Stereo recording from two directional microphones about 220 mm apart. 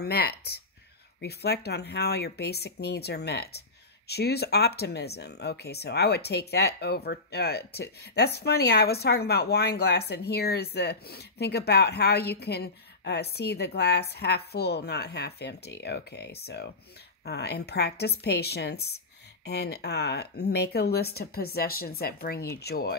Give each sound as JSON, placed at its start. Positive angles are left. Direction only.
{"t": 0.0, "sound": "speech", "side_deg": 45}